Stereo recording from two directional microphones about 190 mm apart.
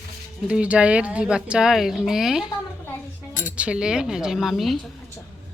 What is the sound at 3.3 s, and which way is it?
Speech, 45° left (ahead or behind).